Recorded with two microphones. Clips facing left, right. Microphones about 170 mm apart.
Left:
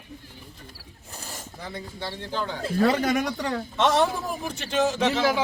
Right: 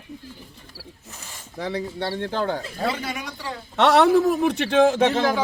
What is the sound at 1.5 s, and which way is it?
A man's voice, 90° right.